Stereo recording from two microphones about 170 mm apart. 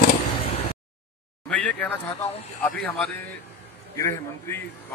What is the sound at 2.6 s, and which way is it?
A man's voice, 10° left (ahead or behind).